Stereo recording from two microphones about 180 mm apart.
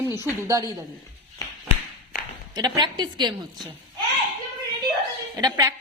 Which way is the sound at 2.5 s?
25° right (ahead or behind).